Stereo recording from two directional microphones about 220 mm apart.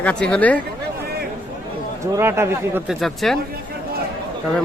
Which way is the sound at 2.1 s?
10° right (ahead or behind).